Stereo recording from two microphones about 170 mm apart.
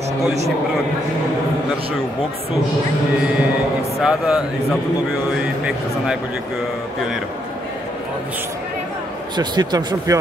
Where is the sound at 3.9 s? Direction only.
Centre (ahead or behind).